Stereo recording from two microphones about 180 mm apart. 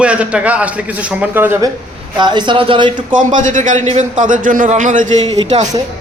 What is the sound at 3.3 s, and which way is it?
Speech, 45° right (ahead or behind).